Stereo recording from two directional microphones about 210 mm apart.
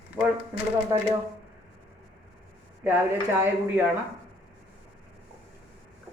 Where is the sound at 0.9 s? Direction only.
15° right (ahead or behind).